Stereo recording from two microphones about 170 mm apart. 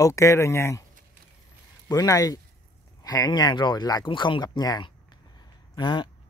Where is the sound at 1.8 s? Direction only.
20° left (ahead or behind).